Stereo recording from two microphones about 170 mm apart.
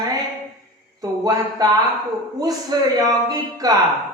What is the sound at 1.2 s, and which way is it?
Speech, 20° right (ahead or behind).